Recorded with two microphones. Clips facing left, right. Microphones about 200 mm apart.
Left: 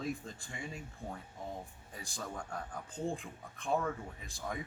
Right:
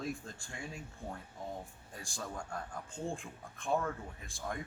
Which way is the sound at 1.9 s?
Centre (ahead or behind).